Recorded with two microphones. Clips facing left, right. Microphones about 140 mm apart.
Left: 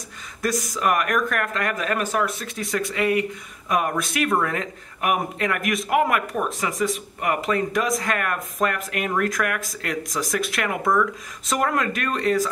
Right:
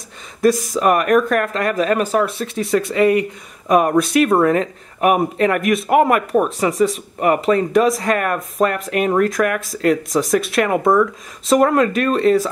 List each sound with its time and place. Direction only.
0.4 s speech: 25° right (ahead or behind)